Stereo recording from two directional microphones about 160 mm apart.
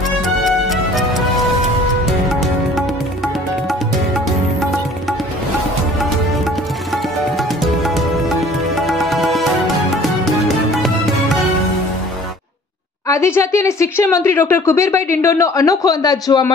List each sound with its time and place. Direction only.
0.4 s music: centre (ahead or behind)
7.3 s music: centre (ahead or behind)
13.1 s speech: 20° left (ahead or behind)